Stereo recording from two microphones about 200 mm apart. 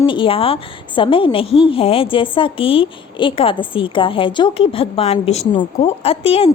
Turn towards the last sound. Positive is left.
turn(degrees=30)  # may be behind; listen again after turning